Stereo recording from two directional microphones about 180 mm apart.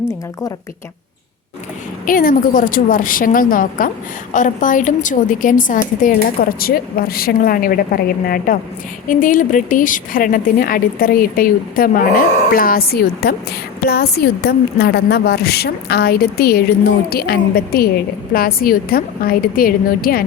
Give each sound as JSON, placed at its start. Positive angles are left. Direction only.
{"t": 2.0, "sound": "a woman's voice", "side_deg": 50}